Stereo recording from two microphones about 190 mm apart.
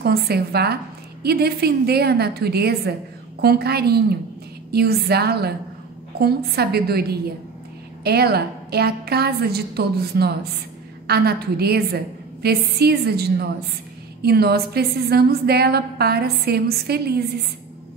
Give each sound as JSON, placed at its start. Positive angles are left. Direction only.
{"t": 0.0, "sound": "a woman's voice", "side_deg": -55}